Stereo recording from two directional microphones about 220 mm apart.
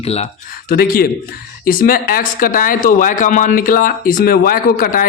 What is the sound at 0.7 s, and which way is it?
Speech, 45° left (ahead or behind).